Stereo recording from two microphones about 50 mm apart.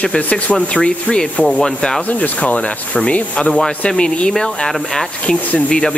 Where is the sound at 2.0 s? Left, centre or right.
Left.